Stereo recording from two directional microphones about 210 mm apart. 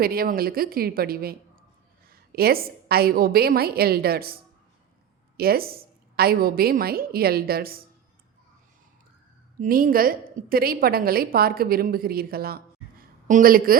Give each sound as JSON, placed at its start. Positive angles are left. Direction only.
{"t": 0.0, "sound": "a woman's voice", "side_deg": -45}
{"t": 5.4, "sound": "a woman's voice", "side_deg": -45}
{"t": 9.6, "sound": "a woman's voice", "side_deg": -40}